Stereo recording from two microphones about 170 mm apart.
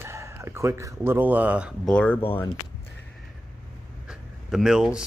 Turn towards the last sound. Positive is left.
turn(degrees=-5)  # may be behind; listen again after turning